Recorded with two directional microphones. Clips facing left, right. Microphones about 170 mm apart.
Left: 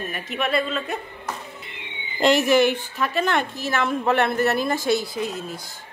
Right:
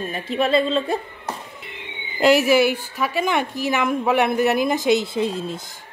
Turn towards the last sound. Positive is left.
turn(degrees=-30)  # may be behind; listen again after turning